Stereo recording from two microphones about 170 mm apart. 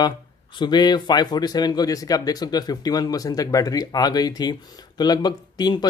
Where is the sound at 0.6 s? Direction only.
25° left (ahead or behind).